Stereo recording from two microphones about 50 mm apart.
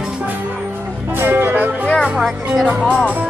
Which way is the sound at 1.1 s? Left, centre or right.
Right.